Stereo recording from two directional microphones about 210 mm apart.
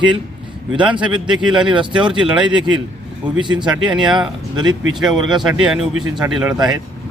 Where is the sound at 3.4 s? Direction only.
20° right (ahead or behind).